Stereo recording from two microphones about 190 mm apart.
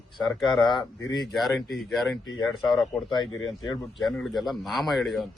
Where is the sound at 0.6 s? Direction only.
20° left (ahead or behind).